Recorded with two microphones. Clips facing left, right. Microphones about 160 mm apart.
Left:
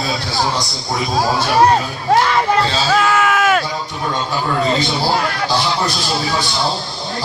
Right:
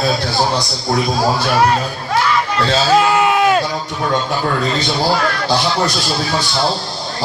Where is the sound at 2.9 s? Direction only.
20° right (ahead or behind).